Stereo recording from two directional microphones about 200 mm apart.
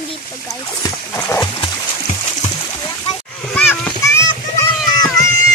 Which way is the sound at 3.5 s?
10° left (ahead or behind).